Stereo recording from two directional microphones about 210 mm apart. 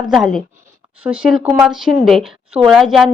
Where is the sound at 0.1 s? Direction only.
Centre (ahead or behind).